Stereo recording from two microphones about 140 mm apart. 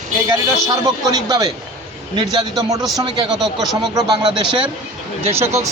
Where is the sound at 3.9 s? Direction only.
30° right (ahead or behind).